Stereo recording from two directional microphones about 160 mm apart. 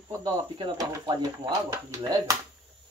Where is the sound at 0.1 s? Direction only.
25° right (ahead or behind).